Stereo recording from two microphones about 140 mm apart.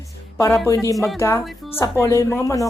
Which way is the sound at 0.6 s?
20° left (ahead or behind).